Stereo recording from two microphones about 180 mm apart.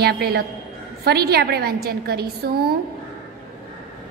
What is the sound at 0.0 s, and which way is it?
A woman's voice, 60° right (ahead or behind).